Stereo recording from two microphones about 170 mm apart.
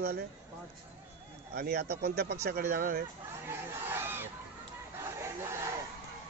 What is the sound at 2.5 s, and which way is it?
Speech, 60° right (ahead or behind).